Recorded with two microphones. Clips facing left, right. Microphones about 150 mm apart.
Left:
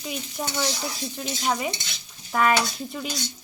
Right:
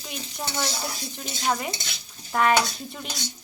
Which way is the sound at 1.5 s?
5° left (ahead or behind).